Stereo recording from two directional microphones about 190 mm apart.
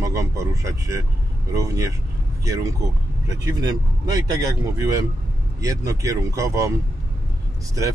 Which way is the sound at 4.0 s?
20° right (ahead or behind).